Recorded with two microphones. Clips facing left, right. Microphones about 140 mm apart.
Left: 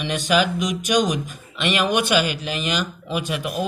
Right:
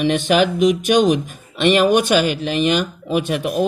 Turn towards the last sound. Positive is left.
turn(degrees=-50)  # may be behind; listen again after turning